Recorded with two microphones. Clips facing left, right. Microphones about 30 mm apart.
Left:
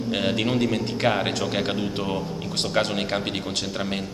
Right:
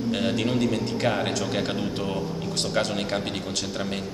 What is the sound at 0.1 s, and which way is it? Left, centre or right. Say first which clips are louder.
A man's voice: left 2 dB; left.